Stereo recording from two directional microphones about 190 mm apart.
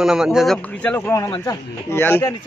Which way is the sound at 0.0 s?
5° right (ahead or behind).